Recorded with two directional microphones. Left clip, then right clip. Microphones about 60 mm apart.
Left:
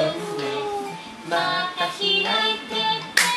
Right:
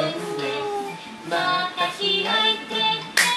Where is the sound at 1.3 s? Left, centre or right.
Left.